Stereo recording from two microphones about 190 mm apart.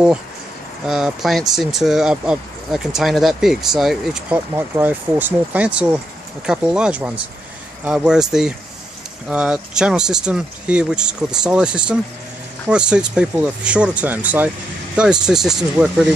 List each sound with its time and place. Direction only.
0.8 s speech: centre (ahead or behind)